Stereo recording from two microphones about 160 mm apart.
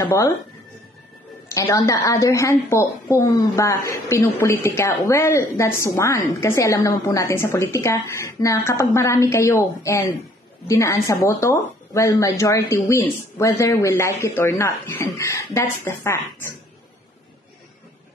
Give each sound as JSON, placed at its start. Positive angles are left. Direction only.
{"t": 0.0, "sound": "a woman's voice", "side_deg": 20}
{"t": 1.5, "sound": "a woman's voice", "side_deg": 20}